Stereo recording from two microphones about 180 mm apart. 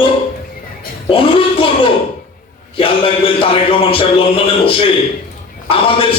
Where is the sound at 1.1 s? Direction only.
30° left (ahead or behind).